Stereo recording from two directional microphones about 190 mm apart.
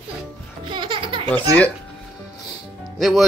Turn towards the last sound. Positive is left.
turn(degrees=0)  # may be behind; listen again after turning